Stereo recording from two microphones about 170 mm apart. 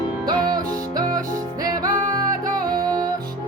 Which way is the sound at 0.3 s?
25° right (ahead or behind).